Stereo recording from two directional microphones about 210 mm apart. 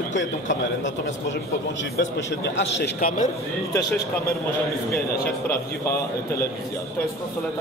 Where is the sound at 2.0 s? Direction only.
55° left (ahead or behind).